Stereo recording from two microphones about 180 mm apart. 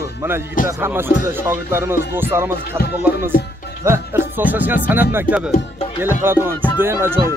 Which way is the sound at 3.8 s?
15° right (ahead or behind).